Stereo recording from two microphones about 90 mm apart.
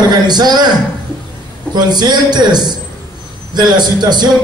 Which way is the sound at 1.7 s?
50° right (ahead or behind).